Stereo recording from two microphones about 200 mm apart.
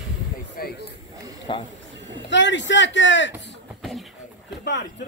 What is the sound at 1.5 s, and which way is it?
Speech, 25° left (ahead or behind).